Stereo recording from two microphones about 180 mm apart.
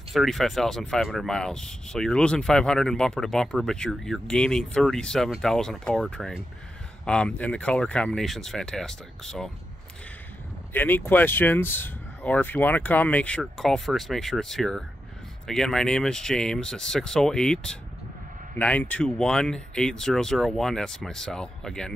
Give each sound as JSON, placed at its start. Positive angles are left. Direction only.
{"t": 0.1, "sound": "speech", "side_deg": 0}
{"t": 10.7, "sound": "speech", "side_deg": 10}